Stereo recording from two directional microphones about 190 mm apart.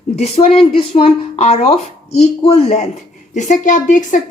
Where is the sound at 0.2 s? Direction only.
30° left (ahead or behind).